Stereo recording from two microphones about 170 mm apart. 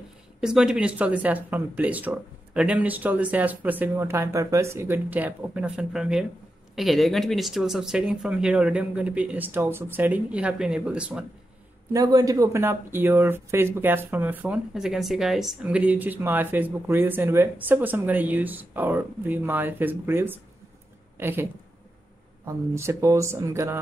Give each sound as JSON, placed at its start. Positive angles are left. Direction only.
{"t": 0.4, "sound": "speech", "side_deg": -5}
{"t": 11.9, "sound": "a woman's voice", "side_deg": -20}